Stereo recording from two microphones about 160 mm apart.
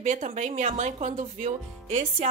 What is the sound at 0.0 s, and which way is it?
A woman's voice, 50° right (ahead or behind).